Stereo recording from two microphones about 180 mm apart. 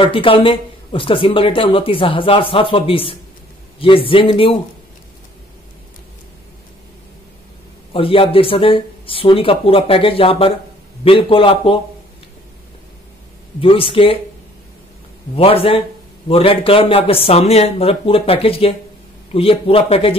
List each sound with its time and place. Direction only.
0.0 s speech: 30° left (ahead or behind)
7.9 s speech: 30° left (ahead or behind)
13.6 s speech: 30° left (ahead or behind)
15.3 s speech: 30° left (ahead or behind)